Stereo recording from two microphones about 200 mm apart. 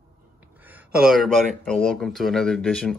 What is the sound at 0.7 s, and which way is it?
Speech, 5° right (ahead or behind).